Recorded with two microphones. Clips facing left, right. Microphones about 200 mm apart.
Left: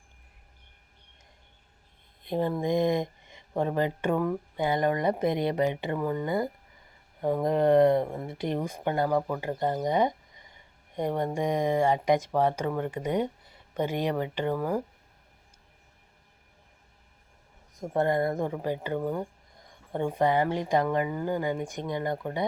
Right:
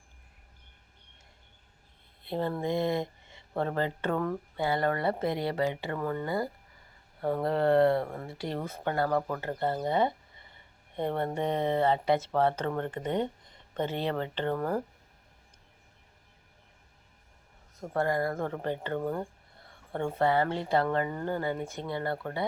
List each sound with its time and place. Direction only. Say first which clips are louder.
2.2 s speech: left 3 dB; 15° left (ahead or behind)
17.7 s speech: left 3 dB; 20° left (ahead or behind)